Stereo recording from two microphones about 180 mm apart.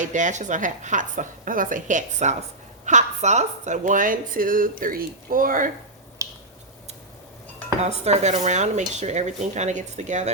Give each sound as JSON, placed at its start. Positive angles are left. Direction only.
{"t": 0.0, "sound": "a woman's voice", "side_deg": -45}
{"t": 6.2, "sound": "finger snapping", "side_deg": -20}
{"t": 7.8, "sound": "speech", "side_deg": -40}